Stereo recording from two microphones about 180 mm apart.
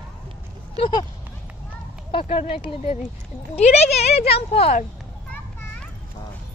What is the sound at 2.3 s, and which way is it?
Speech, 30° left (ahead or behind).